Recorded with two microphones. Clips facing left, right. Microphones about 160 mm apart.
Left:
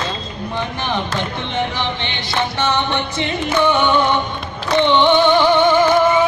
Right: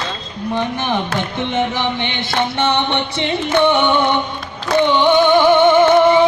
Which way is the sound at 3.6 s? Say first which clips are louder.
Even; 20° right (ahead or behind).